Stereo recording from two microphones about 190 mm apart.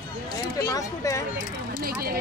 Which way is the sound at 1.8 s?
50° right (ahead or behind).